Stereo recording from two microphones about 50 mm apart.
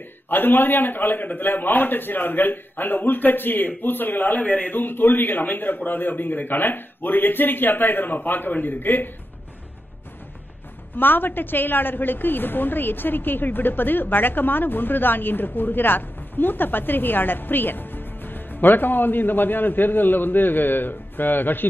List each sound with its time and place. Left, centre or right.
0.3 s a man's voice: left
11.0 s a woman's voice: left